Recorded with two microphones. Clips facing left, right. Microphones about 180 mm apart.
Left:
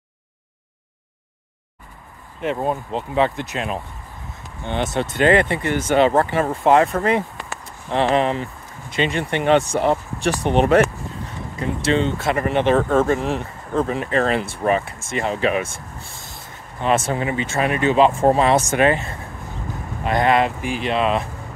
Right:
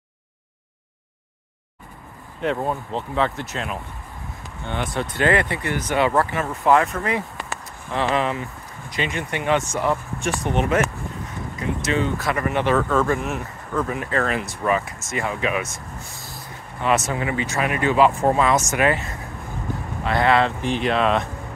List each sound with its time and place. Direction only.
2.6 s speech: 15° left (ahead or behind)
11.8 s speech: 30° left (ahead or behind); by 21.3 s 5° left (ahead or behind)